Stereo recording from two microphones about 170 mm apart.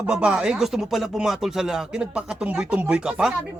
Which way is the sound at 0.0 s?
5° right (ahead or behind).